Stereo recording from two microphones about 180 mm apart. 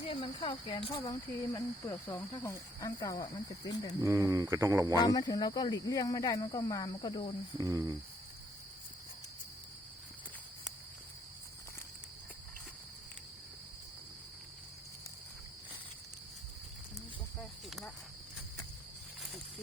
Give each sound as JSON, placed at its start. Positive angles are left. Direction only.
{"t": 0.1, "sound": "speech", "side_deg": 30}
{"t": 4.0, "sound": "speech", "side_deg": -20}
{"t": 4.9, "sound": "speech", "side_deg": 20}
{"t": 7.6, "sound": "cricket", "side_deg": -20}
{"t": 17.4, "sound": "cricket", "side_deg": 0}